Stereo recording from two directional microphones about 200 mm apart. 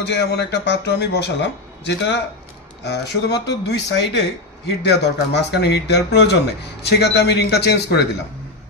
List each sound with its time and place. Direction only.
0.0 s a man's voice: 55° left (ahead or behind)